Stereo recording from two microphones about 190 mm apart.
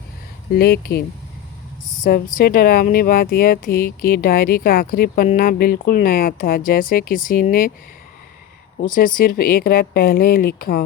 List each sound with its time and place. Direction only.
0.5 s speech: 55° left (ahead or behind)
2.0 s speech: 50° left (ahead or behind)
8.8 s speech: 45° left (ahead or behind)